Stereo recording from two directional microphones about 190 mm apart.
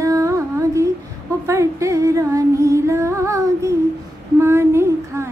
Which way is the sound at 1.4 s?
15° right (ahead or behind).